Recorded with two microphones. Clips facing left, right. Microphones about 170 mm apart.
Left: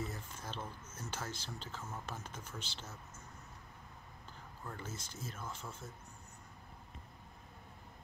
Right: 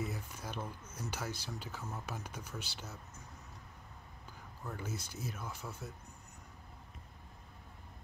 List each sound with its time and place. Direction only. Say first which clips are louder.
0.0 s a sound: right 2 dB; 15° right (ahead or behind)
1.1 s speech: right 2 dB; 10° right (ahead or behind)
4.6 s speech: right 4 dB; 10° right (ahead or behind)